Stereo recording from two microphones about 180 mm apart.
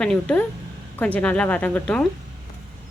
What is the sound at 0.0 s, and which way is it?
Speech, 5° left (ahead or behind).